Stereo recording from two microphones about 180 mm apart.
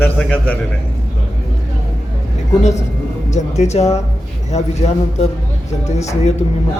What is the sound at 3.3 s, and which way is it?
Speech, 40° left (ahead or behind).